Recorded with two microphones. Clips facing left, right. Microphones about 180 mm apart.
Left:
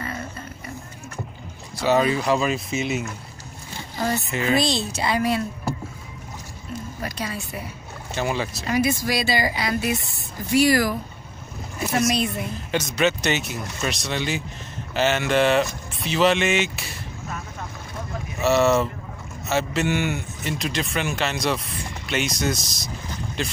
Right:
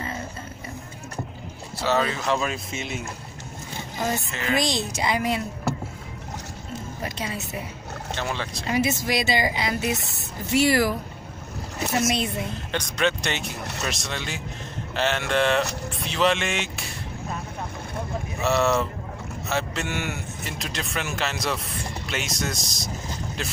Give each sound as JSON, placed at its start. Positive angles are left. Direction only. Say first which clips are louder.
{"t": 1.8, "sound": "speech", "louder": "left 4 dB", "side_deg": 15}
{"t": 4.3, "sound": "speech", "louder": "left 4 dB", "side_deg": 15}
{"t": 4.6, "sound": "a woman's voice", "louder": "left 2 dB", "side_deg": -15}
{"t": 7.0, "sound": "speech", "louder": "left 1 dB", "side_deg": -25}
{"t": 8.1, "sound": "speech", "louder": "left 5 dB", "side_deg": 10}
{"t": 8.6, "sound": "speech", "louder": "left 1 dB", "side_deg": -25}
{"t": 12.0, "sound": "speech", "louder": "left 3 dB", "side_deg": -25}
{"t": 12.7, "sound": "speech", "louder": "left 3 dB", "side_deg": 5}
{"t": 18.4, "sound": "speech", "louder": "left 4 dB", "side_deg": 0}